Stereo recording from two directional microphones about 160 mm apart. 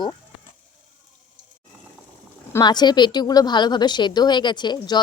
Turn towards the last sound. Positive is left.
turn(degrees=25)  # may be behind; listen again after turning